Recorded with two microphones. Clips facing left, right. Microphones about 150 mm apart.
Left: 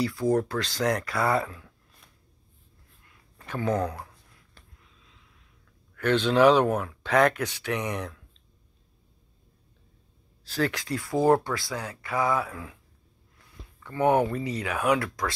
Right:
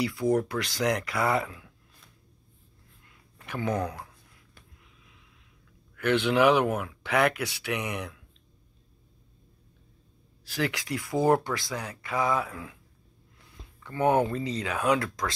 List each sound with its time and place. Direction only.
0.0 s speech: 15° right (ahead or behind)
3.4 s speech: 15° right (ahead or behind)
3.8 s speech: 30° left (ahead or behind)
5.9 s speech: 10° right (ahead or behind)
10.5 s speech: 15° right (ahead or behind)
13.8 s speech: 20° left (ahead or behind)
14.5 s speech: 20° right (ahead or behind)